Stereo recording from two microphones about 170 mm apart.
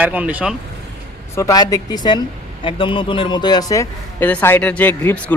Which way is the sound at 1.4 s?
20° left (ahead or behind).